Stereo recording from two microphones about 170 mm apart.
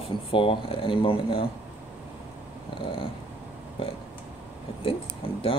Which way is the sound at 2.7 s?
30° left (ahead or behind).